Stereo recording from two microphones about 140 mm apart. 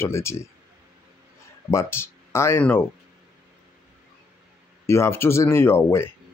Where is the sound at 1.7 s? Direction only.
20° left (ahead or behind).